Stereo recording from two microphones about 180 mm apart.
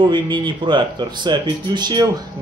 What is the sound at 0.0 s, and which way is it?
Speech, 25° right (ahead or behind).